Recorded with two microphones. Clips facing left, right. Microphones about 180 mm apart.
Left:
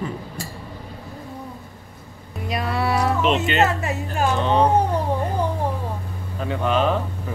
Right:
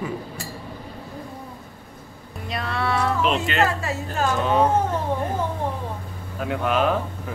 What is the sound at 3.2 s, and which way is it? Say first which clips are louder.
Speech: left 2 dB; centre (ahead or behind).